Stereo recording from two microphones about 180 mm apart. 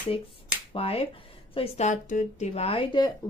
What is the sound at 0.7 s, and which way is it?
A woman's voice, 30° left (ahead or behind).